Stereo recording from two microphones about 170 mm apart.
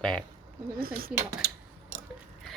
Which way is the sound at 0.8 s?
60° right (ahead or behind).